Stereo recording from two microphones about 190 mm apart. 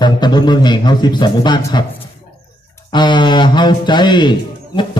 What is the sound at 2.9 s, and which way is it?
Speech, 25° left (ahead or behind).